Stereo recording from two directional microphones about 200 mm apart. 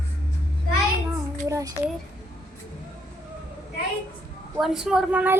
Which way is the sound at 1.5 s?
15° right (ahead or behind).